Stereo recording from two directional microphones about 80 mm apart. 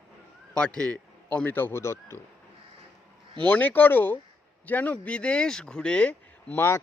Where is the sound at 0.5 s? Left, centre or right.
Centre.